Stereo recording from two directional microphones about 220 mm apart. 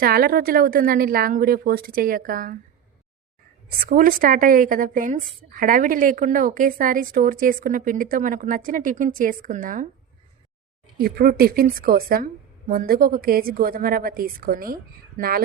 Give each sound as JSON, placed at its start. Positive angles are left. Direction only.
{"t": 0.0, "sound": "a woman's voice", "side_deg": -45}
{"t": 3.8, "sound": "a woman's voice", "side_deg": -40}
{"t": 10.9, "sound": "a woman's voice", "side_deg": -45}